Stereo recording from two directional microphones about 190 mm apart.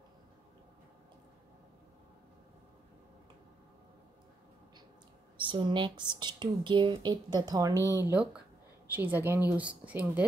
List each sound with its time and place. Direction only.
5.4 s speech: 25° right (ahead or behind)
7.7 s speech: 15° left (ahead or behind)
8.1 s a woman's voice: 5° right (ahead or behind)